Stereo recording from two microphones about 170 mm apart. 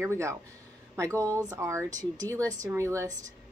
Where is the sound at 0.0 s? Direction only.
15° right (ahead or behind).